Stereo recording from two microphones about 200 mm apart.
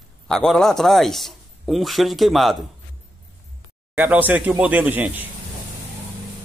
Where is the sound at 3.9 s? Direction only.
10° right (ahead or behind).